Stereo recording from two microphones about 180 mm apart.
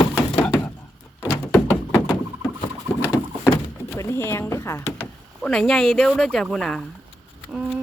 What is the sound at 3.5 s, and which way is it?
Door, 15° left (ahead or behind).